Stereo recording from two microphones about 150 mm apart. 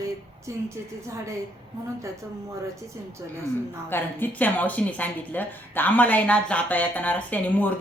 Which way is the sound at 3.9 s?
10° left (ahead or behind).